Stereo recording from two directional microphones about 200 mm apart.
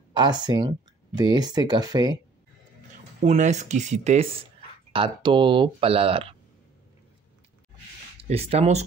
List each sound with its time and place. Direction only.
0.1 s speech: 20° right (ahead or behind)
3.2 s speech: 35° right (ahead or behind)
8.2 s speech: 30° right (ahead or behind)